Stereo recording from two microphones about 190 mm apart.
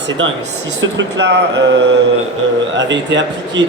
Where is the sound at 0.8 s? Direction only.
70° right (ahead or behind).